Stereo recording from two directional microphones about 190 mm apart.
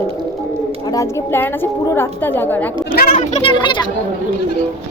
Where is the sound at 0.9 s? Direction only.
10° left (ahead or behind).